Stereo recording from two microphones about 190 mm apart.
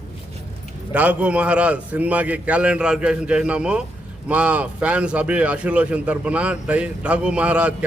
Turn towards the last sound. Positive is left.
turn(degrees=-5)  # may be behind; listen again after turning